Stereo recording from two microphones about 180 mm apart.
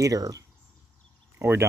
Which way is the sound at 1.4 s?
10° right (ahead or behind).